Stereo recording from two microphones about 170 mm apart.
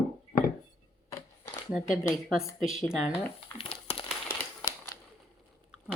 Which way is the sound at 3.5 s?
35° left (ahead or behind).